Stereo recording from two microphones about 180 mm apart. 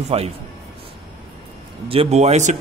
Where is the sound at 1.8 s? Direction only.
30° right (ahead or behind).